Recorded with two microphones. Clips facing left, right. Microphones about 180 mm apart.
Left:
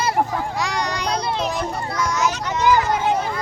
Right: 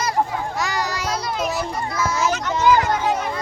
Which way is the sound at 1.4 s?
5° right (ahead or behind).